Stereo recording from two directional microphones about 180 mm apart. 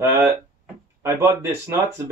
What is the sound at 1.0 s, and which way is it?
Speech, 15° right (ahead or behind).